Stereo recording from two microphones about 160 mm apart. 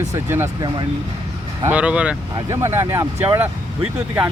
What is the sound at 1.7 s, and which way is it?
Speech, 10° right (ahead or behind).